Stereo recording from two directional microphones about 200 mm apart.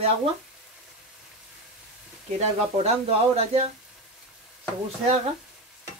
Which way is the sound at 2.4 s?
35° right (ahead or behind).